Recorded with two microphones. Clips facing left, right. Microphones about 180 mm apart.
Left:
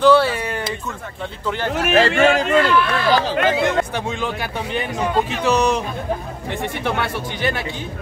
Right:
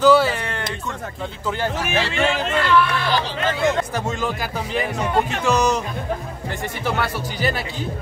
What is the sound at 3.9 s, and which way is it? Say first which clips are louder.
Speech: even; centre (ahead or behind).